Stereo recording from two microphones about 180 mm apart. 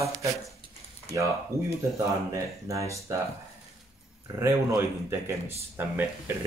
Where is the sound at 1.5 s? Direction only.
15° left (ahead or behind).